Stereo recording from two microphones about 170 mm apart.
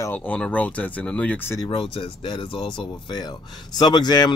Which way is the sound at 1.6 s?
30° left (ahead or behind).